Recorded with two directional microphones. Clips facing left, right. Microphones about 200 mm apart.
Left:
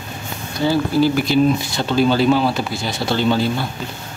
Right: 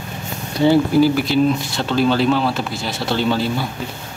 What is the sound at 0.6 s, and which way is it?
Speech, 20° right (ahead or behind).